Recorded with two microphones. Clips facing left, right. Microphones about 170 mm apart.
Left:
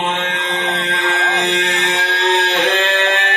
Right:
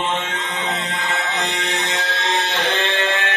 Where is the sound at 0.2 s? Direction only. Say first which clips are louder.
Left 4 dB; 60° left (ahead or behind).